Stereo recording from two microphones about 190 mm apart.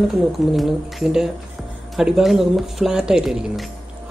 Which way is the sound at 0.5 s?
Centre (ahead or behind).